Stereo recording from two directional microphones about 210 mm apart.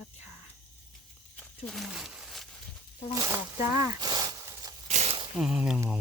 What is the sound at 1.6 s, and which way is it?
Speech, centre (ahead or behind).